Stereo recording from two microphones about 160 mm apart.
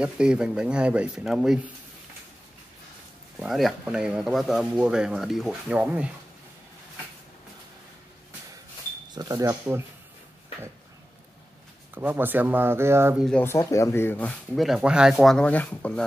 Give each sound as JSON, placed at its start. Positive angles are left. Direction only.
{"t": 0.0, "sound": "speech", "side_deg": -5}
{"t": 3.3, "sound": "speech", "side_deg": 0}
{"t": 9.1, "sound": "speech", "side_deg": -25}
{"t": 11.9, "sound": "speech", "side_deg": -10}
{"t": 13.4, "sound": "speech", "side_deg": 15}